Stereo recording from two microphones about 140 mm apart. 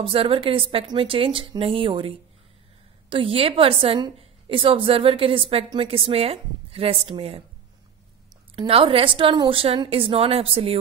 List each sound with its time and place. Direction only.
0.0 s a woman's voice: 40° right (ahead or behind)
8.5 s a woman's voice: 40° right (ahead or behind)